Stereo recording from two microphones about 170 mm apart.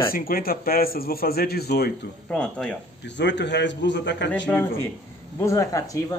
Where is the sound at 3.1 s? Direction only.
90° left.